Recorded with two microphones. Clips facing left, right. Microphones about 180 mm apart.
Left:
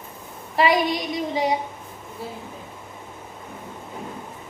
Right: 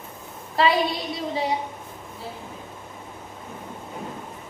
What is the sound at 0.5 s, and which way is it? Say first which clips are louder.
Speech: left 1 dB; 15° left (ahead or behind).